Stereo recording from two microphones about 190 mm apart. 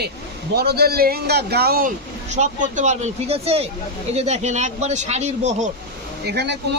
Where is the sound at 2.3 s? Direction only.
40° right (ahead or behind).